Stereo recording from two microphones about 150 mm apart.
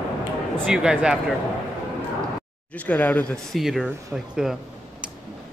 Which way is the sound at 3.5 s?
Centre (ahead or behind).